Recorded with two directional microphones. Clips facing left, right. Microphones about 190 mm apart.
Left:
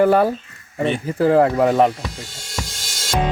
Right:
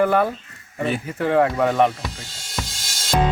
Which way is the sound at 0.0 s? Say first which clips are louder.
Left 4 dB; 35° left (ahead or behind).